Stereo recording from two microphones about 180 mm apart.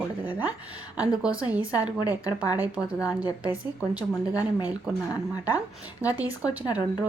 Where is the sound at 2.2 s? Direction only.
20° left (ahead or behind).